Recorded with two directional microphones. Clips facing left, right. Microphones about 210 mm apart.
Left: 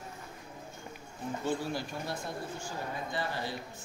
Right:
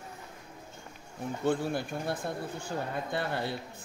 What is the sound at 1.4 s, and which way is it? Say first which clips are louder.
Speech: right 5 dB; 55° right (ahead or behind).